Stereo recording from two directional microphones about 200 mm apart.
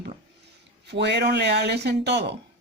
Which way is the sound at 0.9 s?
60° right (ahead or behind).